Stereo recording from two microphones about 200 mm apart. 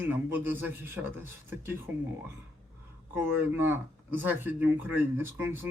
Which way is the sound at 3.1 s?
10° right (ahead or behind).